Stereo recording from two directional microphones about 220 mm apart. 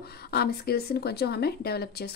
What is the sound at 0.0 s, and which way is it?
A woman's voice, 45° left (ahead or behind).